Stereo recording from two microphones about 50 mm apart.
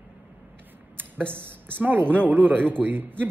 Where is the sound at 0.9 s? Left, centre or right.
Right.